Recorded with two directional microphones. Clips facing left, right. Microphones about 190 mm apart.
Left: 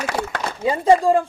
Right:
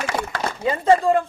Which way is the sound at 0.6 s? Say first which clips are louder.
Left 2 dB; 15° left (ahead or behind).